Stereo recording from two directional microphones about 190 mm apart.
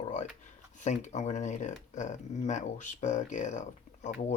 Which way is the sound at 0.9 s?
40° left (ahead or behind).